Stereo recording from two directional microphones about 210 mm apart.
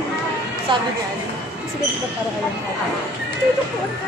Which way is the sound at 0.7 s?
20° right (ahead or behind).